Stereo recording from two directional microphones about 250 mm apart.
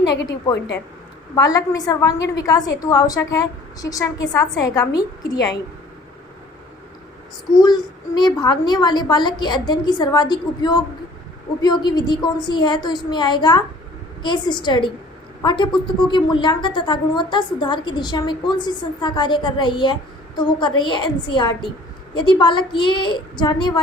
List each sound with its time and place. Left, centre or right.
0.0 s a woman's voice: left
0.3 s a woman's voice: centre
7.5 s a woman's voice: centre